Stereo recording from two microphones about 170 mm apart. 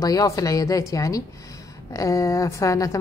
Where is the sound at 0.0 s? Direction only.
20° left (ahead or behind).